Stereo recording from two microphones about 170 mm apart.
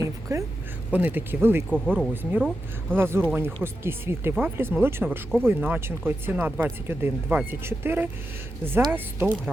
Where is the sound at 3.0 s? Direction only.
15° right (ahead or behind).